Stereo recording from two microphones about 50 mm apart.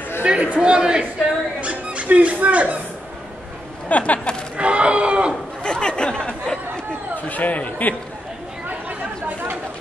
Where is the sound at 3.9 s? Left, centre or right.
Left.